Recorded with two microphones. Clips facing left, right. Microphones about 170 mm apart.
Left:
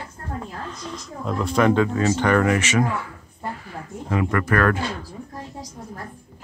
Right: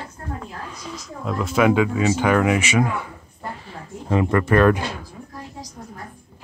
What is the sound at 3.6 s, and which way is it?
Speech, 25° right (ahead or behind).